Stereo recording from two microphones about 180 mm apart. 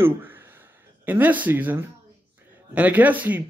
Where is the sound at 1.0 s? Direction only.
10° right (ahead or behind).